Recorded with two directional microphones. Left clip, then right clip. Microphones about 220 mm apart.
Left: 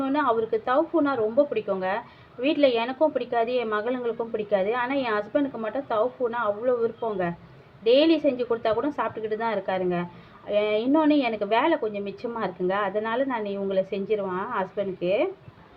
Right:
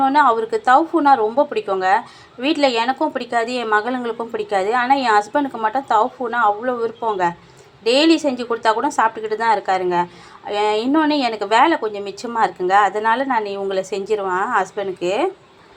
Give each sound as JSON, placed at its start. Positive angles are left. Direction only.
{"t": 0.0, "sound": "speech", "side_deg": -20}
{"t": 7.9, "sound": "speech", "side_deg": -20}